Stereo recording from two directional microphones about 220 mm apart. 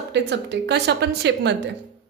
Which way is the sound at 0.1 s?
50° right (ahead or behind).